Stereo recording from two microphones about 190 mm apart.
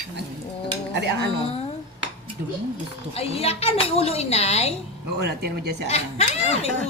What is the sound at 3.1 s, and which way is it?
A woman's voice, 30° left (ahead or behind).